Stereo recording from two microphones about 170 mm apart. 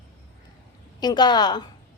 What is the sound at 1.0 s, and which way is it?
Speech, 25° left (ahead or behind).